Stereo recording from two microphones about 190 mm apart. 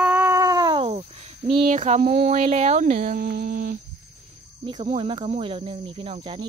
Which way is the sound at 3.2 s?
55° right (ahead or behind).